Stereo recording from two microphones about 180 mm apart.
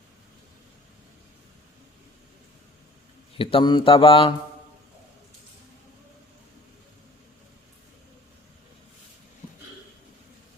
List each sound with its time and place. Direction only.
3.3 s speech: 30° left (ahead or behind)